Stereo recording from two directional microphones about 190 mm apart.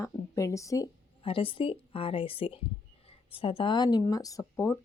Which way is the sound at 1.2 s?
30° left (ahead or behind).